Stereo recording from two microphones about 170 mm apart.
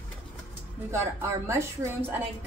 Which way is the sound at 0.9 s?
15° right (ahead or behind).